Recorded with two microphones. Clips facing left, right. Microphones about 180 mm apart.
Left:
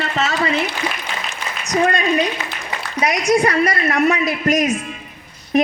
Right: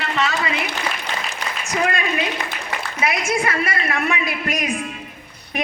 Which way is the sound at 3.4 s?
40° left (ahead or behind).